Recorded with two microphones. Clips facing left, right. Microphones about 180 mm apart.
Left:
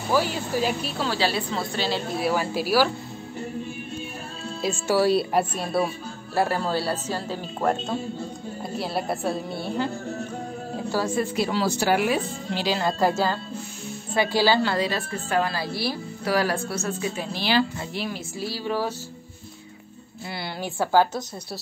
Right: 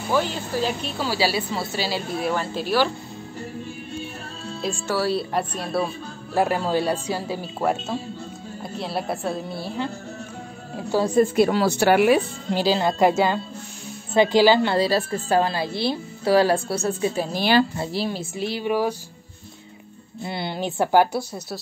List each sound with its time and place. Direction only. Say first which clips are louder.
0.1 s speech: even; 5° left (ahead or behind)
4.6 s speech: left 2 dB; 5° left (ahead or behind)
4.9 s a woman's voice: left 4 dB; 15° left (ahead or behind)
6.3 s speech: right 3 dB; 15° right (ahead or behind)
8.7 s speech: even; centre (ahead or behind)
11.1 s speech: right 7 dB; 50° right (ahead or behind)
12.7 s speech: right 3 dB; 20° right (ahead or behind)
14.8 s a woman's voice: right 5 dB; 35° right (ahead or behind)
17.7 s speech: right 5 dB; 30° right (ahead or behind); by 18.9 s 15° right (ahead or behind)
20.2 s speech: right 4 dB; 20° right (ahead or behind)